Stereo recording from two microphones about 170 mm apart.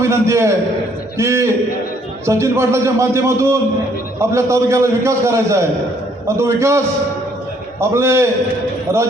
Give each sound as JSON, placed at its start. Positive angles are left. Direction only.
{"t": 0.0, "sound": "a man's voice", "side_deg": -15}